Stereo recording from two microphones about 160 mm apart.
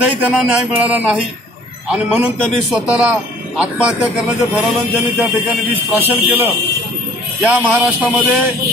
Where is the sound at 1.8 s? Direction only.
5° right (ahead or behind).